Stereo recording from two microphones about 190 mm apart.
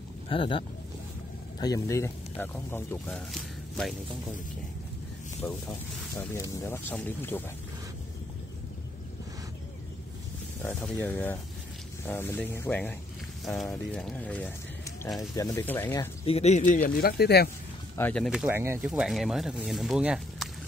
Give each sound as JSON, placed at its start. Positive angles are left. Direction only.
{"t": 0.3, "sound": "speech", "side_deg": 25}
{"t": 5.4, "sound": "speech", "side_deg": 5}
{"t": 10.6, "sound": "speech", "side_deg": 5}
{"t": 15.1, "sound": "speech", "side_deg": 20}
{"t": 16.3, "sound": "speech", "side_deg": 35}
{"t": 16.9, "sound": "speech", "side_deg": 55}
{"t": 17.9, "sound": "speech", "side_deg": 5}